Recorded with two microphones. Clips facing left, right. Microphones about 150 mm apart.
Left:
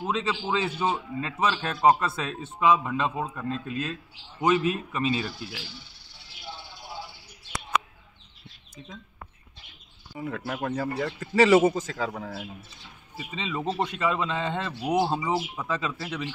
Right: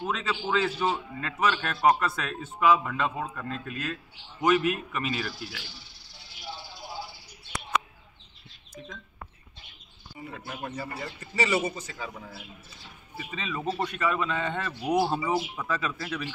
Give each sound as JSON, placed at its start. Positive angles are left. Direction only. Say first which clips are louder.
{"t": 0.0, "sound": "a man's voice", "louder": "left 2 dB", "side_deg": 25}
{"t": 10.1, "sound": "a man's voice", "louder": "left 7 dB", "side_deg": 85}
{"t": 13.2, "sound": "a man's voice", "louder": "left 2 dB", "side_deg": 20}